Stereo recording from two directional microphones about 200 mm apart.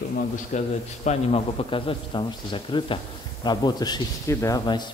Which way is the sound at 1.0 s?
30° left (ahead or behind).